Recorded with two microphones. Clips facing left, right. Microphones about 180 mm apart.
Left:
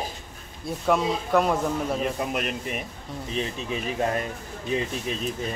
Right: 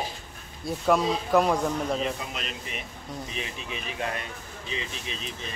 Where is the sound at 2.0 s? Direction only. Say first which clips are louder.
Left 4 dB; 55° left (ahead or behind).